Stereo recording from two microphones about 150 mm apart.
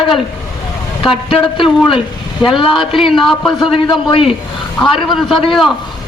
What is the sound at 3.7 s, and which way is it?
Speech, 35° left (ahead or behind).